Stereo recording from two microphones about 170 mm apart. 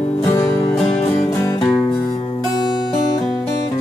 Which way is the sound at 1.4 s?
15° left (ahead or behind).